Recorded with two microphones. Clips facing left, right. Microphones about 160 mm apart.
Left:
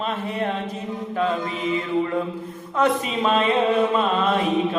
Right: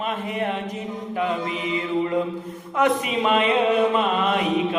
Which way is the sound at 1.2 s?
15° right (ahead or behind).